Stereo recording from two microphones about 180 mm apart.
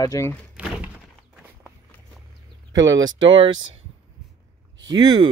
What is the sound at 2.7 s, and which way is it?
Speech, 20° right (ahead or behind).